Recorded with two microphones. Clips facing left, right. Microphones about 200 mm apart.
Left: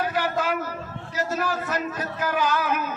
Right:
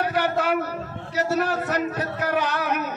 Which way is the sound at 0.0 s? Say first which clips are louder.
Right 2 dB; 65° right (ahead or behind).